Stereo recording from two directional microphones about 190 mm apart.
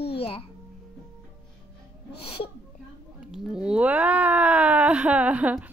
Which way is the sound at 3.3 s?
5° right (ahead or behind).